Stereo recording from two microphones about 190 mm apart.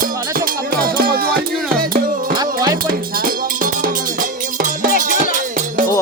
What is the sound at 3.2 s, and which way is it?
Music, 45° right (ahead or behind).